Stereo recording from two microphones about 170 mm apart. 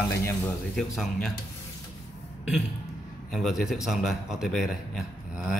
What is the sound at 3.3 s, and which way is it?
A man's voice, centre (ahead or behind).